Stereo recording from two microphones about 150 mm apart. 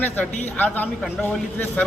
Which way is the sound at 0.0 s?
10° left (ahead or behind).